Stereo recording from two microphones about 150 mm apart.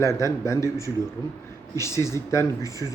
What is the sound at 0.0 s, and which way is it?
Speech, 20° left (ahead or behind).